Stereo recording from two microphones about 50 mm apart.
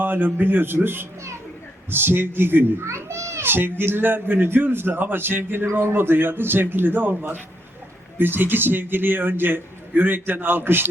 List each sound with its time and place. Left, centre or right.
0.0 s a man's voice: right
2.8 s a child's voice: right
3.4 s a man's voice: right